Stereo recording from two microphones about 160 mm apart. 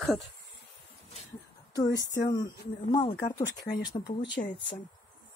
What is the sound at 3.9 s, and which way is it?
Speech, 25° left (ahead or behind).